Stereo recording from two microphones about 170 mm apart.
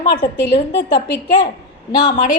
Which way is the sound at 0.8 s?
75° left (ahead or behind).